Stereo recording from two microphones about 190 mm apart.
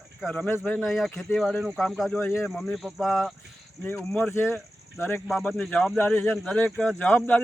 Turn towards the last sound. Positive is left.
turn(degrees=10)  # may be behind; listen again after turning